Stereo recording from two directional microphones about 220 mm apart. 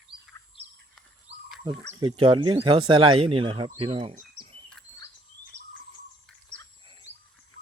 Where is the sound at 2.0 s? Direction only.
25° right (ahead or behind).